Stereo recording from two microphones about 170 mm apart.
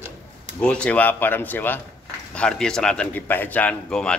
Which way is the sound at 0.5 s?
5° left (ahead or behind).